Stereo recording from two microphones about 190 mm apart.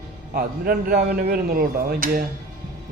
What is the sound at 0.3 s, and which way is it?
Speech, 50° right (ahead or behind).